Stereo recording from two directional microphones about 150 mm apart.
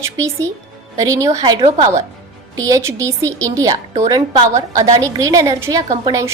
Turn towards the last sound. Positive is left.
turn(degrees=-20)  # may be behind; listen again after turning